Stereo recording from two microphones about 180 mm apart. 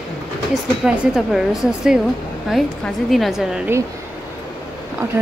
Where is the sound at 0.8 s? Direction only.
5° right (ahead or behind).